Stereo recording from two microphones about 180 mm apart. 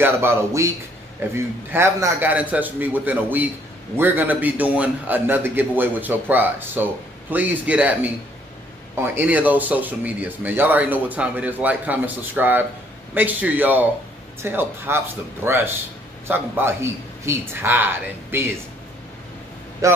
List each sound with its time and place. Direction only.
0.0 s a man's voice: 15° right (ahead or behind)
19.8 s a man's voice: 15° right (ahead or behind)